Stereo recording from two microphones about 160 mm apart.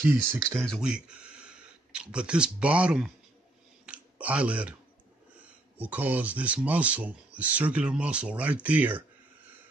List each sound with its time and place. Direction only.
0.1 s speech: 15° right (ahead or behind)
0.7 s speech: 5° right (ahead or behind)
3.8 s a sound: 10° right (ahead or behind)
5.4 s speech: 10° right (ahead or behind)